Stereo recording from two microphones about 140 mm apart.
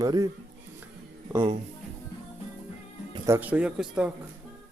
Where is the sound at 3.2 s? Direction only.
15° right (ahead or behind).